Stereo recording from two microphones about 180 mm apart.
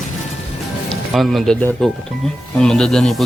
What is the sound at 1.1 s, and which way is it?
Speech, centre (ahead or behind).